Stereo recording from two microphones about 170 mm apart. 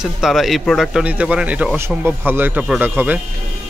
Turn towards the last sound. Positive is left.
turn(degrees=-10)  # may be behind; listen again after turning